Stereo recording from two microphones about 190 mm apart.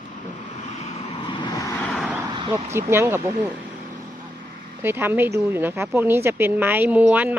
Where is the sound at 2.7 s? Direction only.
15° right (ahead or behind).